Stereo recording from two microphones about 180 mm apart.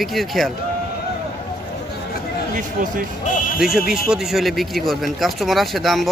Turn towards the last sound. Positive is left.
turn(degrees=0)  # may be behind; listen again after turning